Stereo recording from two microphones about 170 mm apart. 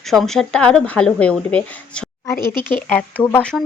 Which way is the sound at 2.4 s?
25° right (ahead or behind).